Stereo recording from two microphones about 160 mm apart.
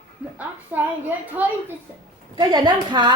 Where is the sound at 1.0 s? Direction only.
10° right (ahead or behind).